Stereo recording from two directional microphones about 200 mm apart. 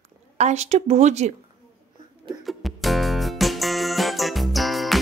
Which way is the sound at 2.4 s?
Centre (ahead or behind).